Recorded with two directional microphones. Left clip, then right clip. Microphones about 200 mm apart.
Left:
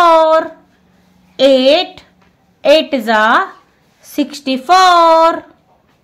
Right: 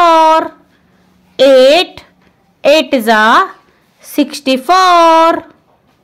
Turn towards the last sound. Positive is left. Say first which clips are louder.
# right 2 dB
turn(degrees=-30)  # may be behind; listen again after turning